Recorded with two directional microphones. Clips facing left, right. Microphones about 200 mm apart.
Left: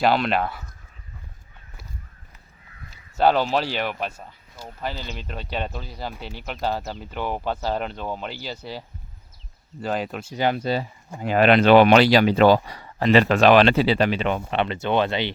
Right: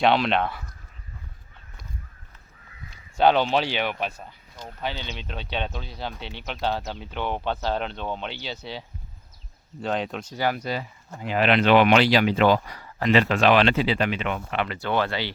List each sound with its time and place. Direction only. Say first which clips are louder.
0.0 s speech: even; centre (ahead or behind)
3.2 s speech: even; 5° left (ahead or behind)
9.8 s speech: left 1 dB; 5° left (ahead or behind)
10.3 s speech: left 4 dB; 25° left (ahead or behind)
11.2 s speech: left 5 dB; 45° left (ahead or behind)
13.2 s speech: left 4 dB; 45° left (ahead or behind); by 15.3 s 20° left (ahead or behind)